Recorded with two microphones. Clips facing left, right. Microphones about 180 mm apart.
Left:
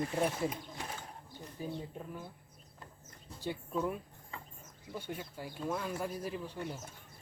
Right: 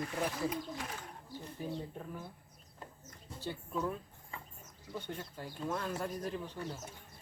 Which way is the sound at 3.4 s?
15° left (ahead or behind).